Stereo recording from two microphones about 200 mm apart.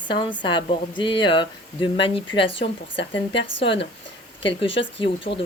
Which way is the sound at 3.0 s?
60° left (ahead or behind).